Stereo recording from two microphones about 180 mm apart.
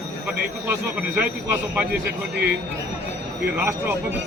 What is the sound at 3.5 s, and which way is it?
Speech, 10° right (ahead or behind).